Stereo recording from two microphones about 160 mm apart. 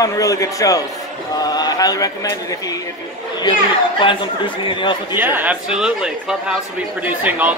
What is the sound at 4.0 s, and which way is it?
Speech, 30° left (ahead or behind).